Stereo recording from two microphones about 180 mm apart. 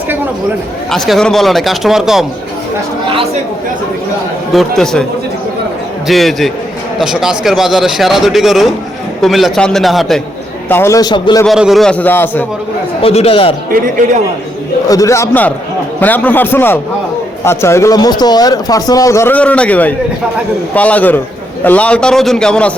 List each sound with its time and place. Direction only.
0.9 s speech: centre (ahead or behind)
4.5 s speech: 5° left (ahead or behind)
6.1 s speech: centre (ahead or behind)
10.7 s speech: 15° left (ahead or behind)
11.4 s speech: centre (ahead or behind)
13.0 s a man's voice: 35° left (ahead or behind)
13.7 s speech: 50° right (ahead or behind)
14.8 s speech: 20° left (ahead or behind)